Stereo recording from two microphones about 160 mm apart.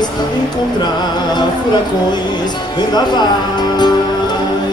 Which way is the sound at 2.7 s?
25° left (ahead or behind).